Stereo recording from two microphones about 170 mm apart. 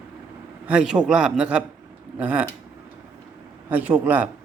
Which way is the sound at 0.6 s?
5° right (ahead or behind).